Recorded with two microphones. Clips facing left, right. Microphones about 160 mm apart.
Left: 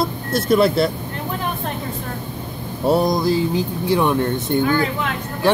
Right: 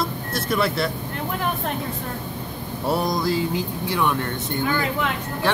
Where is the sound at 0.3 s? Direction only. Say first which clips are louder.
Left 9 dB; 25° left (ahead or behind).